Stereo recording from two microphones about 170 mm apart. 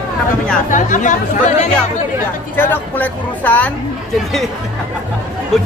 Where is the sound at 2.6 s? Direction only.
10° left (ahead or behind).